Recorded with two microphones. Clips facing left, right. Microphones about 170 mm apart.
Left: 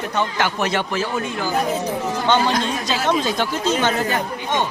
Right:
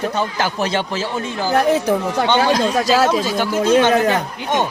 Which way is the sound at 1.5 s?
75° right (ahead or behind).